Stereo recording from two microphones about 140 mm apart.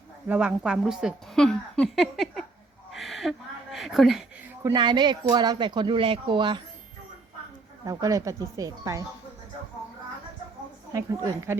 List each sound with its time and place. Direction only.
0.3 s a woman's voice: 10° right (ahead or behind)
2.9 s a sound: centre (ahead or behind)
4.6 s speech: 30° right (ahead or behind)
7.9 s speech: 25° right (ahead or behind)
10.9 s speech: 25° right (ahead or behind)